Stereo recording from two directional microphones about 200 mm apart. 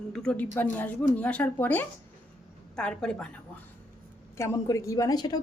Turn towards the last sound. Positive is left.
turn(degrees=20)  # may be behind; listen again after turning